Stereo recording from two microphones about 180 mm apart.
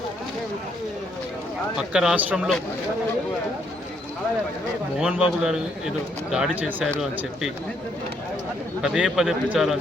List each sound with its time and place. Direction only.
1.8 s a man's voice: 5° right (ahead or behind)
4.9 s a man's voice: 5° right (ahead or behind)
8.8 s a man's voice: centre (ahead or behind)